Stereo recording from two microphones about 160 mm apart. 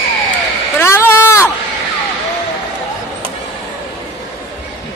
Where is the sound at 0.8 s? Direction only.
15° left (ahead or behind).